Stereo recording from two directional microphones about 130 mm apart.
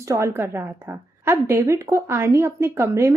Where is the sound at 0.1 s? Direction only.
20° right (ahead or behind).